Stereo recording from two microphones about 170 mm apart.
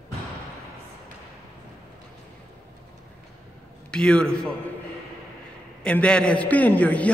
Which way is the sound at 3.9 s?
5° left (ahead or behind).